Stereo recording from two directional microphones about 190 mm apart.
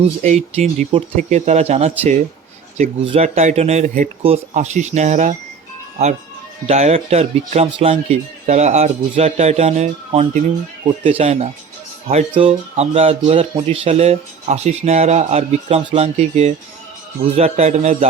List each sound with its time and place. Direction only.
0.2 s speech: 35° right (ahead or behind)
6.7 s speech: 35° right (ahead or behind)